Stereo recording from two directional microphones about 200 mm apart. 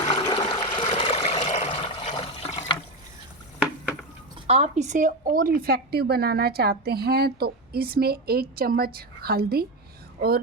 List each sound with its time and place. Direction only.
0.1 s toilet flush: 25° left (ahead or behind)
0.9 s water: 25° left (ahead or behind)
4.4 s a woman's voice: 30° right (ahead or behind); by 10.4 s 50° right (ahead or behind)